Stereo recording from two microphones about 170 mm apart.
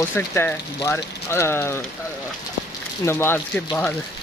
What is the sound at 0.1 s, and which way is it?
Speech, 10° left (ahead or behind).